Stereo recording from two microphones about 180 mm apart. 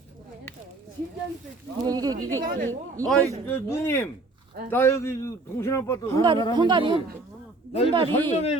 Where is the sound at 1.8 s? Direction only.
20° right (ahead or behind).